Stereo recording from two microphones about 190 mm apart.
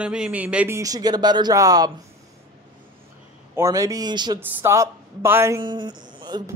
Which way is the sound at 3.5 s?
15° right (ahead or behind).